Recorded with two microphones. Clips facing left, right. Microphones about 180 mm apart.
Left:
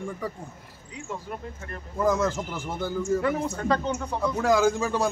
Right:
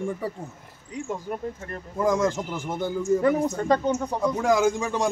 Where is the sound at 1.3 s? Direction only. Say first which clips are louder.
Right 5 dB; 45° right (ahead or behind).